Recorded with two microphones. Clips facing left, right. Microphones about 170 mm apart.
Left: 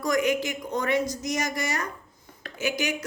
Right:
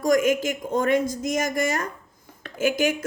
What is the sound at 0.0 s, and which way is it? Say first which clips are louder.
Speech: right 4 dB; 45° right (ahead or behind).